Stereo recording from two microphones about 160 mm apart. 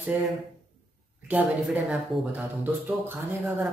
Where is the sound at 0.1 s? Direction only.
15° right (ahead or behind).